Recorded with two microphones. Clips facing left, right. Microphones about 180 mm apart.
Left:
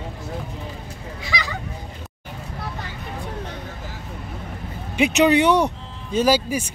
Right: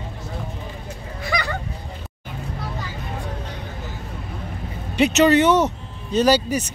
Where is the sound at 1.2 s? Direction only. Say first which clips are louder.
Right 4 dB; 55° right (ahead or behind).